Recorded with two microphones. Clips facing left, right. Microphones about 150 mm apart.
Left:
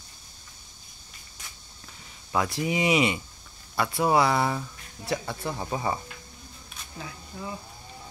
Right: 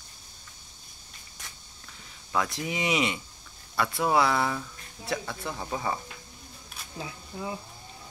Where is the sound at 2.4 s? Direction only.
5° left (ahead or behind).